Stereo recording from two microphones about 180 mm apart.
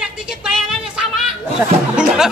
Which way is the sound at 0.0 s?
5° right (ahead or behind).